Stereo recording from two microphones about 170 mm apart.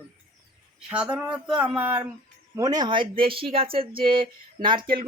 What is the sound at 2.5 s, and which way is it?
Speech, 20° right (ahead or behind).